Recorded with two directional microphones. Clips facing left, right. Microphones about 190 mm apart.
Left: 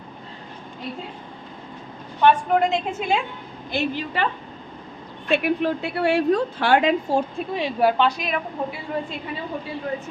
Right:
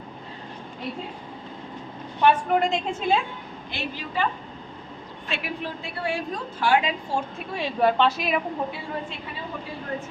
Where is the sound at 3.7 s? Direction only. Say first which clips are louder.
Left 9 dB; 45° left (ahead or behind).